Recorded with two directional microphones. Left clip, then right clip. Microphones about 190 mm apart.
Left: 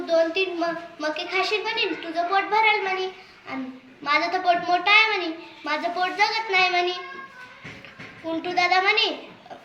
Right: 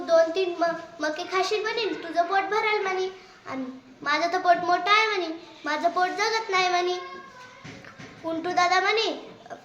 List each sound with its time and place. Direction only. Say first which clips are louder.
0.0 s a woman's voice: even; 25° right (ahead or behind)
8.3 s a woman's voice: left 1 dB; 20° right (ahead or behind)